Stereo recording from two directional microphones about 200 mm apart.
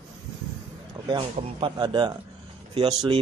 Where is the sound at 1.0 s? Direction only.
20° right (ahead or behind).